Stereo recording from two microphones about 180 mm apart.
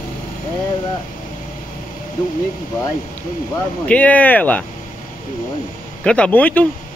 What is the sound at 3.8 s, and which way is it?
Speech, 10° left (ahead or behind).